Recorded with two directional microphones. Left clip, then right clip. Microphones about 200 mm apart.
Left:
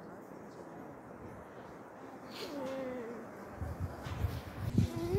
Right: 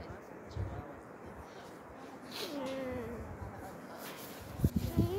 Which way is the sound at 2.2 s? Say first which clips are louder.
Right 1 dB; 45° right (ahead or behind).